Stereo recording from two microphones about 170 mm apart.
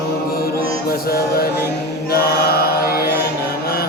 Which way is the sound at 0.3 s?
60° left (ahead or behind).